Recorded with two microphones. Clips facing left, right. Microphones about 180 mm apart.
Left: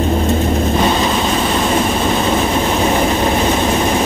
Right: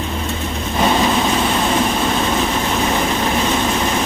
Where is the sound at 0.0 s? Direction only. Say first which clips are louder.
Left 8 dB; 40° left (ahead or behind).